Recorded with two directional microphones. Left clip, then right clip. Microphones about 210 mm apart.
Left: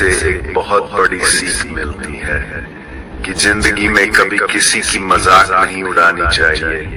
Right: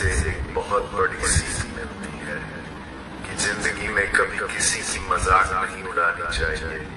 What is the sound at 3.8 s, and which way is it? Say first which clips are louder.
A man's voice: left 9 dB; 45° left (ahead or behind).